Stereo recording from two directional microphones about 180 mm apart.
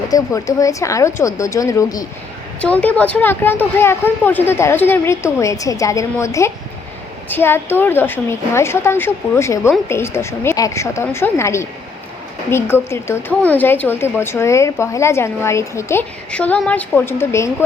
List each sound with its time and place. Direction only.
0.1 s a woman's voice: 20° left (ahead or behind)
2.6 s a woman's voice: 5° left (ahead or behind)